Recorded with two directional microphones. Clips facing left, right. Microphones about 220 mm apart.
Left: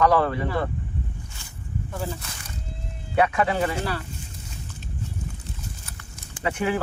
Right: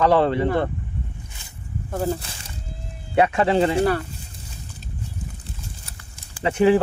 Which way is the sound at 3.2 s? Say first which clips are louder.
Right 4 dB; 25° right (ahead or behind).